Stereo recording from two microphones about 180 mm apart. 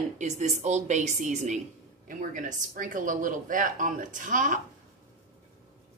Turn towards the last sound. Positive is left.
turn(degrees=-45)  # may be behind; listen again after turning